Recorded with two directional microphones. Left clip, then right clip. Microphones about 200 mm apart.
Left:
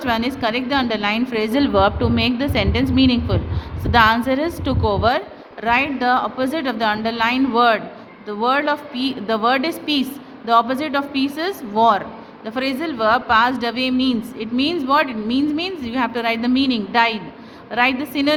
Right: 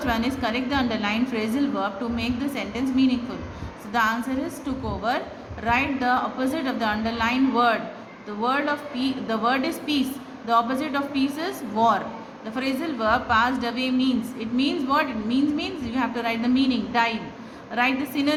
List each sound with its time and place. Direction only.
0.0 s a woman's voice: 45° left (ahead or behind)